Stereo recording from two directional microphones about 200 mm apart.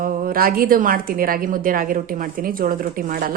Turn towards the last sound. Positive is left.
turn(degrees=-45)  # may be behind; listen again after turning